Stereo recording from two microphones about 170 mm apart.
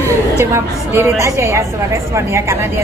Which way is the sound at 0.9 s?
15° right (ahead or behind).